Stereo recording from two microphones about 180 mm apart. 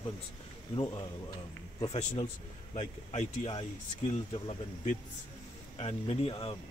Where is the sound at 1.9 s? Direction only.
35° left (ahead or behind).